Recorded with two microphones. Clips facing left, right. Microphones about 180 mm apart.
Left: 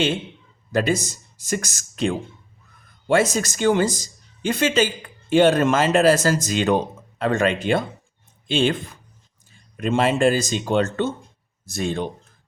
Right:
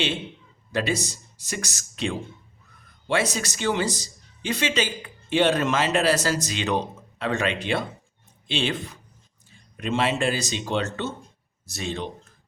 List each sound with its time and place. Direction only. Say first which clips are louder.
0.7 s a man's voice: left 5 dB; 45° left (ahead or behind)